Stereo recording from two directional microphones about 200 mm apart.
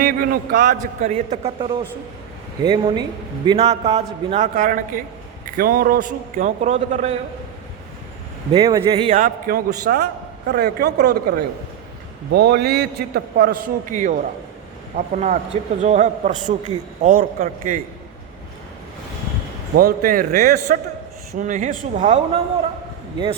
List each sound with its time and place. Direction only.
0.0 s a man's voice: 45° right (ahead or behind)
8.5 s a man's voice: 20° right (ahead or behind)
9.1 s a man's voice: 45° right (ahead or behind)
19.7 s a man's voice: 50° right (ahead or behind)
21.3 s a man's voice: 40° right (ahead or behind)